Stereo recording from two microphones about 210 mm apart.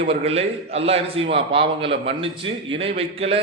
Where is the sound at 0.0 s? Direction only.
25° right (ahead or behind).